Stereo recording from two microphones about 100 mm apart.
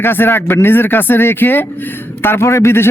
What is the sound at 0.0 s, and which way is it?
A man's voice, 20° left (ahead or behind).